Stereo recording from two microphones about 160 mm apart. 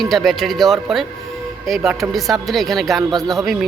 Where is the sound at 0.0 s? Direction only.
Centre (ahead or behind).